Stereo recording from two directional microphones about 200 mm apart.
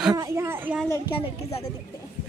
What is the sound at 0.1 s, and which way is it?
Speech, 15° right (ahead or behind).